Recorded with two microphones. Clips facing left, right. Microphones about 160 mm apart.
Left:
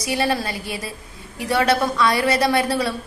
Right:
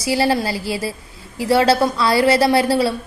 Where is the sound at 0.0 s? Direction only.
30° right (ahead or behind).